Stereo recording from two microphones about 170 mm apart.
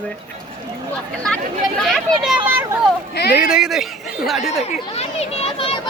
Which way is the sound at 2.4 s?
10° right (ahead or behind).